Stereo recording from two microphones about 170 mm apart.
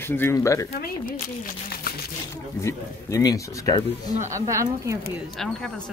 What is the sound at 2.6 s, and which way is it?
Speech, 20° left (ahead or behind).